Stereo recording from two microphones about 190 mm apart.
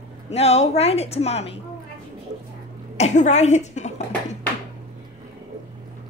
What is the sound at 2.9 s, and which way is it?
A woman's voice, 35° left (ahead or behind).